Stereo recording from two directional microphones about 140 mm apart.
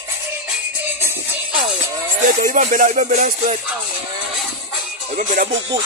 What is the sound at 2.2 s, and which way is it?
Music, 80° right.